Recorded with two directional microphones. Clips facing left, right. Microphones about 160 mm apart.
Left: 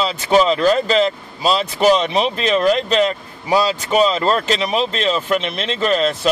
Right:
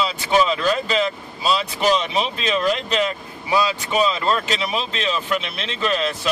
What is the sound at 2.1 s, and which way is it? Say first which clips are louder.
Speech: left 5 dB; 50° left (ahead or behind).